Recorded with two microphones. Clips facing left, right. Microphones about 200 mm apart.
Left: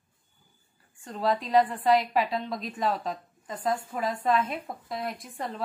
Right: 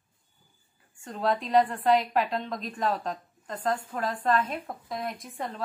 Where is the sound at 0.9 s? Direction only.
Centre (ahead or behind).